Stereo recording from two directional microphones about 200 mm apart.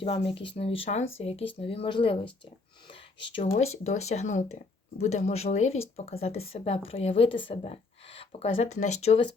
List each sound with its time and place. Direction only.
0.0 s a woman's voice: 30° left (ahead or behind)